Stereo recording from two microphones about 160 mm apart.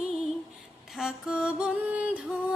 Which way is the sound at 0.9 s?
5° right (ahead or behind).